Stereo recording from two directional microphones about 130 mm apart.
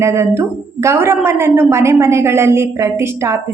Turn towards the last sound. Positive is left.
turn(degrees=-20)  # may be behind; listen again after turning